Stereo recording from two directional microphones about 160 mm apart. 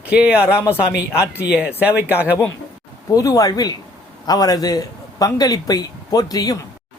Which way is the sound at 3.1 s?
20° left (ahead or behind).